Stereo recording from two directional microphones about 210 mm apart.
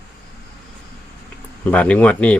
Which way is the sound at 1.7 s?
5° left (ahead or behind).